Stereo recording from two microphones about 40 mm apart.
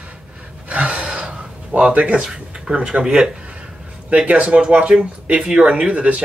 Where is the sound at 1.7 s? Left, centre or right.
Right.